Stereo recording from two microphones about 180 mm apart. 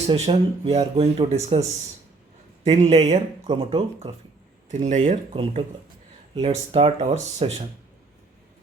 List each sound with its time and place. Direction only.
0.1 s speech: 30° right (ahead or behind)
2.6 s speech: 40° right (ahead or behind)
4.7 s speech: 40° right (ahead or behind)